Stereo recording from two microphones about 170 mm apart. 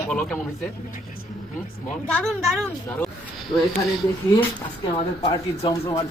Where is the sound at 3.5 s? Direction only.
30° left (ahead or behind).